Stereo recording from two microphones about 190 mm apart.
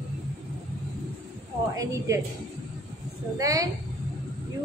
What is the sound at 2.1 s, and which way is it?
Speech, 15° right (ahead or behind).